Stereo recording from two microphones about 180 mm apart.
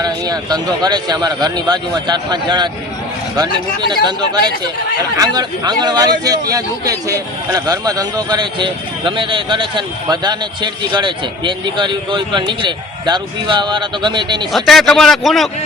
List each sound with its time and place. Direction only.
0.0 s a man's voice: 20° right (ahead or behind)
14.5 s a man's voice: centre (ahead or behind)